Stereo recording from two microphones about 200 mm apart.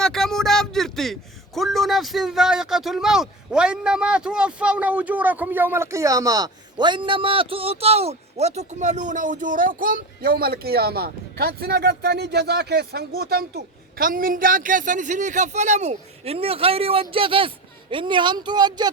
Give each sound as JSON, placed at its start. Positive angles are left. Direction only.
{"t": 0.0, "sound": "a man's voice", "side_deg": 0}